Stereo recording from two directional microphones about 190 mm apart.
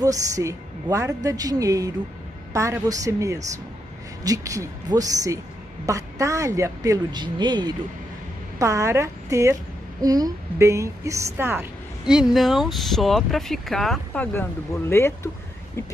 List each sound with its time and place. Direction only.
0.0 s a woman's voice: 15° right (ahead or behind); by 15.8 s 15° left (ahead or behind)